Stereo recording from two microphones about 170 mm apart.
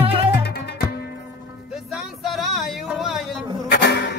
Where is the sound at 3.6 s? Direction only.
75° left (ahead or behind).